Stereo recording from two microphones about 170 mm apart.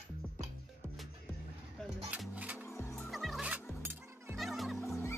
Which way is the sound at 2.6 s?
15° left (ahead or behind).